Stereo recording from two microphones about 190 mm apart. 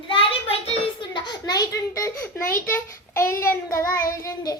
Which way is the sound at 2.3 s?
45° left (ahead or behind).